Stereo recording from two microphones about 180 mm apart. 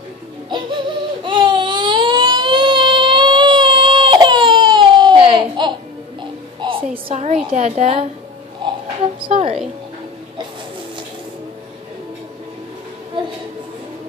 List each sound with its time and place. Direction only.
0.5 s baby cry: 25° right (ahead or behind)
7.1 s a woman's voice: 40° right (ahead or behind)
8.6 s a sound: 25° right (ahead or behind)
9.0 s a woman's voice: 30° right (ahead or behind)